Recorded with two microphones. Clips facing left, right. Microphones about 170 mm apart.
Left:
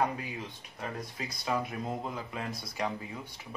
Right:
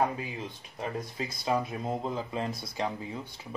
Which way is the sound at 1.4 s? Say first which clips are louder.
Right 3 dB; 25° right (ahead or behind).